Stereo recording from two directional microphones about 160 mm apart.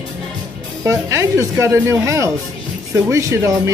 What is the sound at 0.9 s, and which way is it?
Speech, 20° right (ahead or behind).